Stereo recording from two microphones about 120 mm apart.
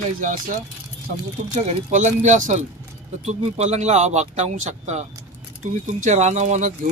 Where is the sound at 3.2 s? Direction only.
70° right (ahead or behind).